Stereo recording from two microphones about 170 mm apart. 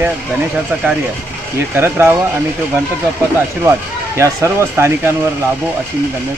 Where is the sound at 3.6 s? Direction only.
15° right (ahead or behind).